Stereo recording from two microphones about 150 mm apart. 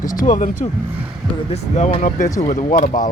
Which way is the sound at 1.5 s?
50° left (ahead or behind).